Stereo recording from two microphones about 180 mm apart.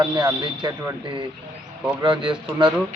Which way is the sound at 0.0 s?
20° right (ahead or behind).